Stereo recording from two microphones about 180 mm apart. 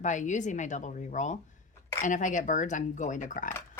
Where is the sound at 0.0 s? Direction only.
45° left (ahead or behind).